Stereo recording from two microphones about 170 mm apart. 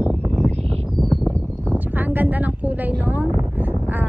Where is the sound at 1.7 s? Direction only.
10° right (ahead or behind).